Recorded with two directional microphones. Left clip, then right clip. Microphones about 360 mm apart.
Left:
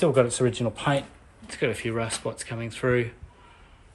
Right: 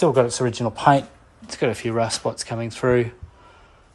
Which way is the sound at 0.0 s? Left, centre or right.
Centre.